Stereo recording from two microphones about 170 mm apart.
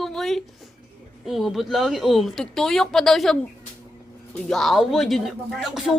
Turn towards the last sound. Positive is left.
turn(degrees=0)  # may be behind; listen again after turning